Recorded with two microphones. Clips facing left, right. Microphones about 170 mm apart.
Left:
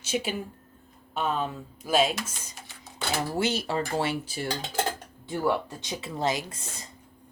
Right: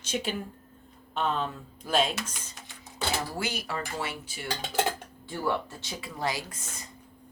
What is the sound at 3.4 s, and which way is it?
Speech, 25° left (ahead or behind).